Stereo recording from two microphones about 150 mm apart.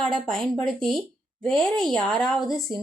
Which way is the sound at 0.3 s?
5° left (ahead or behind).